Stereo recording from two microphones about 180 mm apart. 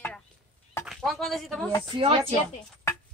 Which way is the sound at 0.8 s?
Centre (ahead or behind).